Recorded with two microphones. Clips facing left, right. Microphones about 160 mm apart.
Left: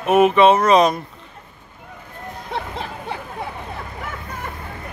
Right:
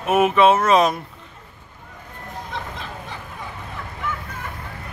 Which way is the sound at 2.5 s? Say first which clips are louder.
Left 6 dB; 65° left (ahead or behind).